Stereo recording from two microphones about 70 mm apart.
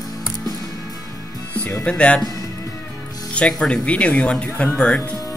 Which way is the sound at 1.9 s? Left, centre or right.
Centre.